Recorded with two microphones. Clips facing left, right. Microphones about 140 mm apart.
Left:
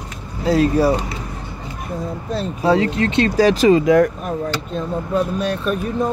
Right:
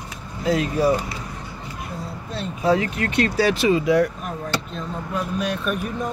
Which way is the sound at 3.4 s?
40° left (ahead or behind).